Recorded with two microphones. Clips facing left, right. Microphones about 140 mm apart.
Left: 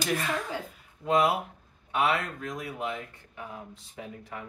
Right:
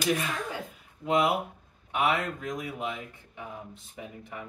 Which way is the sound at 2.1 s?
20° right (ahead or behind).